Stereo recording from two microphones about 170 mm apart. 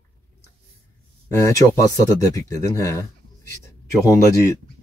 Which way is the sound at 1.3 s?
15° left (ahead or behind).